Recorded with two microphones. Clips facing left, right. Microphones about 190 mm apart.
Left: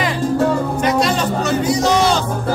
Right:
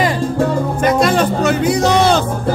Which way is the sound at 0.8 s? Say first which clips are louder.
Right 5 dB; 55° right (ahead or behind).